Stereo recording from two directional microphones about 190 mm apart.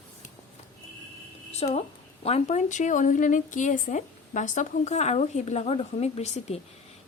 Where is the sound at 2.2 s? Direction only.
35° left (ahead or behind).